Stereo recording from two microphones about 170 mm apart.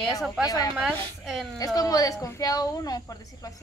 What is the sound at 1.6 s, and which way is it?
A woman's voice, 20° left (ahead or behind).